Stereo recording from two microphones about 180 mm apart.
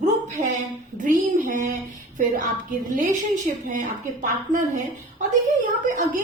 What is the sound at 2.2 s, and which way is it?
A woman's voice, 45° right (ahead or behind).